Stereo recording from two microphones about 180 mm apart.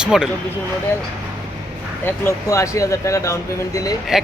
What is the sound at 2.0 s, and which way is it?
Speech, 15° left (ahead or behind).